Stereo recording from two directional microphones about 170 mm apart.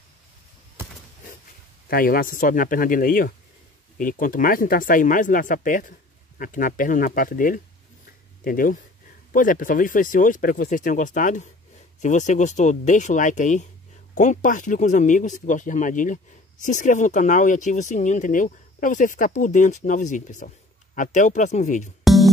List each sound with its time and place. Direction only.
1.9 s speech: 60° left (ahead or behind)
22.0 s music: centre (ahead or behind)